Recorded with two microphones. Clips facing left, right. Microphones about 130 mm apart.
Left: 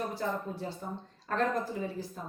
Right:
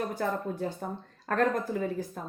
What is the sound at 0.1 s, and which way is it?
Speech, 50° right (ahead or behind).